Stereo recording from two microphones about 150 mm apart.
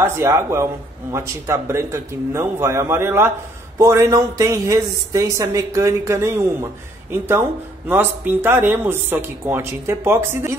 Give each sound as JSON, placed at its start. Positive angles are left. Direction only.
{"t": 0.0, "sound": "speech", "side_deg": -15}